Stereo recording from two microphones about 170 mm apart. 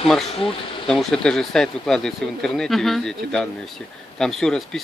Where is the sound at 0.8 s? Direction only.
5° left (ahead or behind).